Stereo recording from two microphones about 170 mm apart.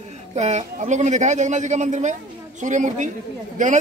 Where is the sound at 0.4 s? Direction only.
45° right (ahead or behind).